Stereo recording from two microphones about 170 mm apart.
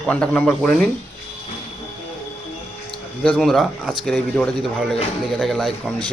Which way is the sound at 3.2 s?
5° left (ahead or behind).